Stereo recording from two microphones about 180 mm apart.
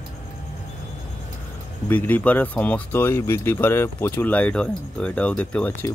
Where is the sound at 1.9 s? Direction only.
10° left (ahead or behind).